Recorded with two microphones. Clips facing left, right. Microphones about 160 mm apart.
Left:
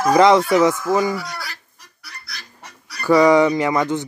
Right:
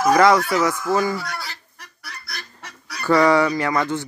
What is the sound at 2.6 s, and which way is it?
Goose, 90° right.